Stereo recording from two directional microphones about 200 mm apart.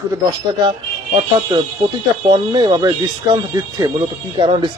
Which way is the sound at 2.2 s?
20° right (ahead or behind).